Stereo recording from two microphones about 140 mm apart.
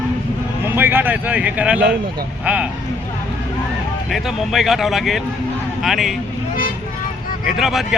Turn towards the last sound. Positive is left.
turn(degrees=0)  # may be behind; listen again after turning